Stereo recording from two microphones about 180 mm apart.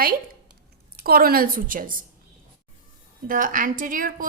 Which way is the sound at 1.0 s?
55° right (ahead or behind).